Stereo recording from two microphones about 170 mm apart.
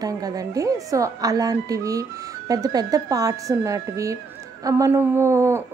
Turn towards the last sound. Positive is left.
turn(degrees=-15)  # may be behind; listen again after turning